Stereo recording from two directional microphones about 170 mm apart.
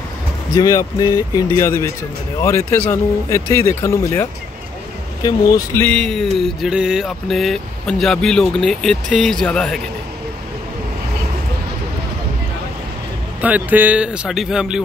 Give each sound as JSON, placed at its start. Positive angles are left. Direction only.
{"t": 0.6, "sound": "speech", "side_deg": 20}
{"t": 13.4, "sound": "speech", "side_deg": -10}